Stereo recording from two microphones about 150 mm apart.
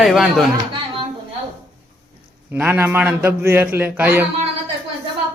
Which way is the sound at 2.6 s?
15° right (ahead or behind).